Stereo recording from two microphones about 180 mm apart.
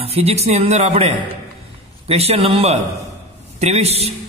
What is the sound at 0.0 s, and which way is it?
A man's voice, 35° right (ahead or behind).